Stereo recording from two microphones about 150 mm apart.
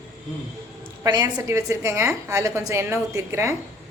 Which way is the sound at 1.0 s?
25° right (ahead or behind).